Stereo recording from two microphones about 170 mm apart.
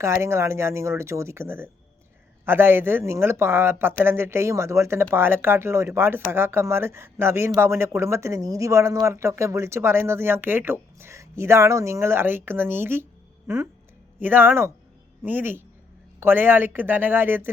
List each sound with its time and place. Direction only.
0.0 s speech: 15° right (ahead or behind)